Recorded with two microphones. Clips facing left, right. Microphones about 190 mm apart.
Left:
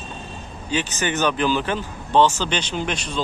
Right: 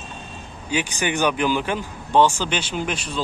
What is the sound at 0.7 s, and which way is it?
Speech, 15° right (ahead or behind).